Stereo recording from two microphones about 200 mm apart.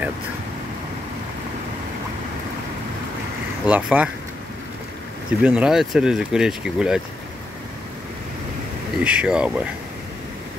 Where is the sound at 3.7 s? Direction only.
5° right (ahead or behind).